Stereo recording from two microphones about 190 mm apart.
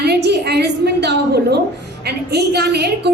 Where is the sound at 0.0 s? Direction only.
60° right (ahead or behind).